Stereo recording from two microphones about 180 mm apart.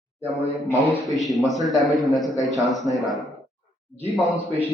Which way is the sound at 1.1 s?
Centre (ahead or behind).